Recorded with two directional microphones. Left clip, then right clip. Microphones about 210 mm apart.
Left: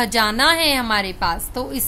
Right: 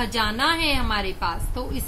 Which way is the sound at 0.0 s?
50° left (ahead or behind).